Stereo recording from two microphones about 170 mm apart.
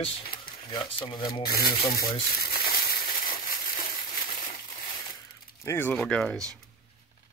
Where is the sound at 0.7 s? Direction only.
30° left (ahead or behind).